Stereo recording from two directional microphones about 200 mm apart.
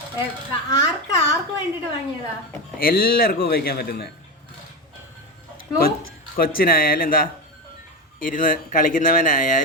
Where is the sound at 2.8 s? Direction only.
45° left (ahead or behind).